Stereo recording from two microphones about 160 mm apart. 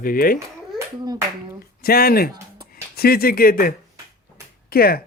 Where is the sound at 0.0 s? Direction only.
60° left (ahead or behind).